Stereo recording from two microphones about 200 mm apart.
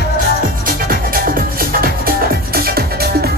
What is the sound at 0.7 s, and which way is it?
Music, 45° right (ahead or behind).